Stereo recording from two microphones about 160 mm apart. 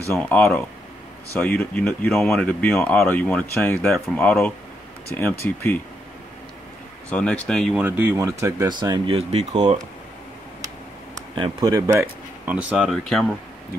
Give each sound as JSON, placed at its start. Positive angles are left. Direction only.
{"t": 0.1, "sound": "speech", "side_deg": 15}
{"t": 1.5, "sound": "speech", "side_deg": 10}
{"t": 7.1, "sound": "speech", "side_deg": 5}
{"t": 7.8, "sound": "speech", "side_deg": -15}
{"t": 11.1, "sound": "speech", "side_deg": -25}